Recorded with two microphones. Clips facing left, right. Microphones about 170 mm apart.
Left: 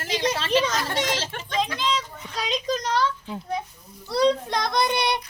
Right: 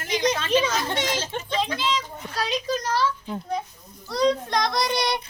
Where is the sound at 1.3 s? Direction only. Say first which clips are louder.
Right 1 dB; 20° right (ahead or behind).